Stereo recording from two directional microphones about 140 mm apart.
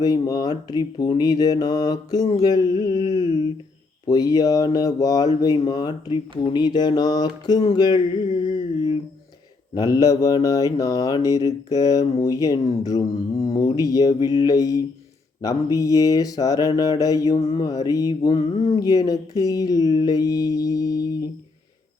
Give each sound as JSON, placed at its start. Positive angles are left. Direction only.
{"t": 0.0, "sound": "speech", "side_deg": 25}
{"t": 9.7, "sound": "speech", "side_deg": 25}